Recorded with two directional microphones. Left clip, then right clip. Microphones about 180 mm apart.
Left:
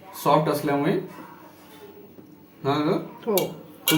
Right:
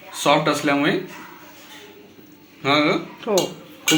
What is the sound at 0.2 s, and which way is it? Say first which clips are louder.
Speech: right 3 dB; centre (ahead or behind).